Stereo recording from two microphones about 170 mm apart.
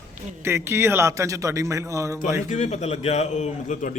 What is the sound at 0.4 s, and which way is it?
A man's voice, 15° right (ahead or behind).